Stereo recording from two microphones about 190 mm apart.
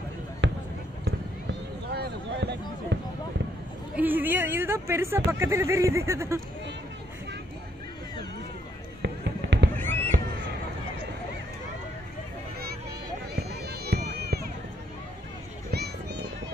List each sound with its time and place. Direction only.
0.4 s basketball bounce: 70° right (ahead or behind)
1.9 s a sound: 60° right (ahead or behind)
3.9 s speech: 10° right (ahead or behind)
9.0 s fireworks: 65° right (ahead or behind)
9.8 s fireworks: 10° left (ahead or behind)
13.3 s run: 60° right (ahead or behind)
15.7 s a sound: 60° right (ahead or behind)